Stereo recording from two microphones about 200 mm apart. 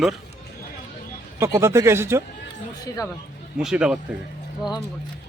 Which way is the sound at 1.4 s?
15° right (ahead or behind).